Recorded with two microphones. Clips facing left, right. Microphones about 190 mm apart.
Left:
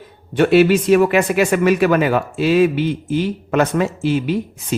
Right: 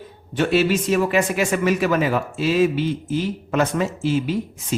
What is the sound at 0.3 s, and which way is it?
A man's voice, 60° left (ahead or behind).